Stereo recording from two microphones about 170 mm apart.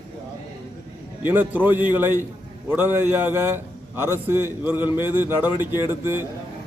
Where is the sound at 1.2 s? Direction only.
10° right (ahead or behind).